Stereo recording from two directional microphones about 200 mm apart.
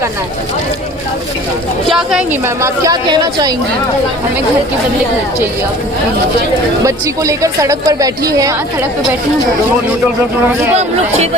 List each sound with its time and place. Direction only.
1.9 s speech: centre (ahead or behind)
2.6 s speech: 15° right (ahead or behind)
6.8 s speech: 15° right (ahead or behind)
10.8 s speech: 30° right (ahead or behind)